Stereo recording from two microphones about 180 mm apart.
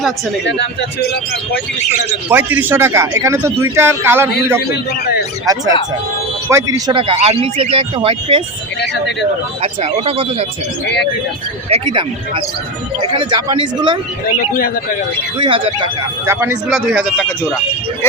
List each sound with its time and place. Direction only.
0.4 s speech: 70° left (ahead or behind)
2.3 s speech: 10° right (ahead or behind)
4.7 s a man's voice: 65° left (ahead or behind)
5.5 s speech: 20° right (ahead or behind)
8.8 s speech: 75° left (ahead or behind)
9.6 s speech: 35° right (ahead or behind)
10.8 s speech: 70° left (ahead or behind)
11.7 s speech: 30° right (ahead or behind)
15.4 s speech: 30° right (ahead or behind)
16.2 s speech: 15° right (ahead or behind)